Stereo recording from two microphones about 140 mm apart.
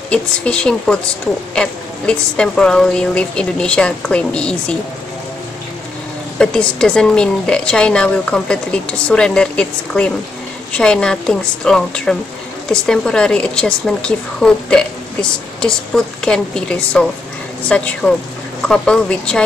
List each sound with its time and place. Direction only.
0.1 s speech: 5° left (ahead or behind)
6.3 s a woman's voice: 5° left (ahead or behind)